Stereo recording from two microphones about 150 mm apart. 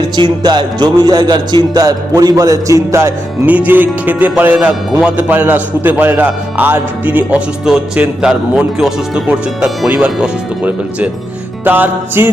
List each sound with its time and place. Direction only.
0.2 s a man's voice: 30° right (ahead or behind); by 12.3 s 15° right (ahead or behind)